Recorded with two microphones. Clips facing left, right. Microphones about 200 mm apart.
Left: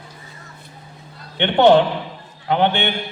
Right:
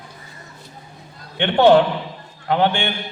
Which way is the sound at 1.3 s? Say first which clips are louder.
Even; 20° left (ahead or behind).